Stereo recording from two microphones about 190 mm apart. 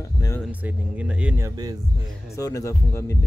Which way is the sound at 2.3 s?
15° left (ahead or behind).